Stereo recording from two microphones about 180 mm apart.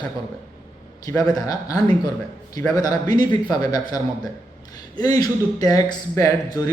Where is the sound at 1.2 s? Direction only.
20° left (ahead or behind).